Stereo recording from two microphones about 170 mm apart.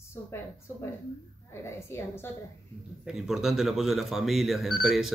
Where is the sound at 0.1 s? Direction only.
15° left (ahead or behind).